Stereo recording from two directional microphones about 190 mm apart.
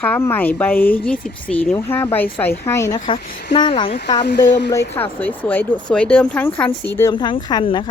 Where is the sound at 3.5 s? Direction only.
25° left (ahead or behind).